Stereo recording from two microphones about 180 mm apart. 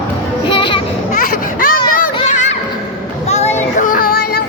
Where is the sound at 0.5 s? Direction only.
30° left (ahead or behind).